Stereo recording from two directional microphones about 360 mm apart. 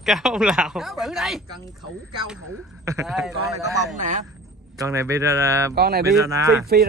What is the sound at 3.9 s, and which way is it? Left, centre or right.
Speech, right.